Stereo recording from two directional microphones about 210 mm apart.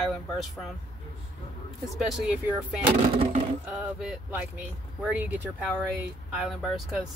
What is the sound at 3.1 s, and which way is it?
Speech, 30° right (ahead or behind).